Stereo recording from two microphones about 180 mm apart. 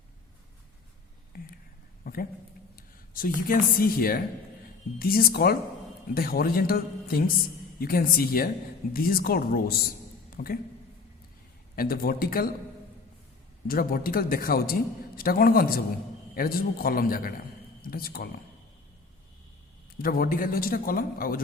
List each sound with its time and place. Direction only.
1.3 s a sound: 55° left (ahead or behind)
2.7 s speech: 50° left (ahead or behind)
11.8 s speech: 55° left (ahead or behind)
13.7 s a man's voice: 55° left (ahead or behind)
20.0 s a man's voice: 55° left (ahead or behind)